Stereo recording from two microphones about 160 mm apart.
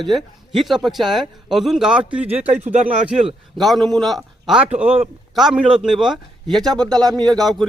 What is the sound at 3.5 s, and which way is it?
A man's voice, centre (ahead or behind).